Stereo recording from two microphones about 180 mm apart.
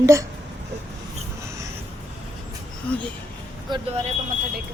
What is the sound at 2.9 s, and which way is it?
Speech, 5° left (ahead or behind).